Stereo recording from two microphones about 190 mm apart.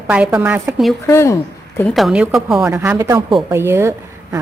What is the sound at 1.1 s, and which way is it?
Speech, 15° left (ahead or behind).